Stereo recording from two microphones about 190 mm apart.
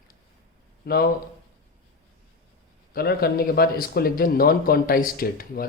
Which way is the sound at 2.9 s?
55° left (ahead or behind).